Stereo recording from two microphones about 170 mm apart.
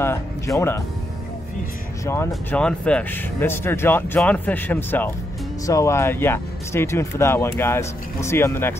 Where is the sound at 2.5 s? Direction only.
5° left (ahead or behind).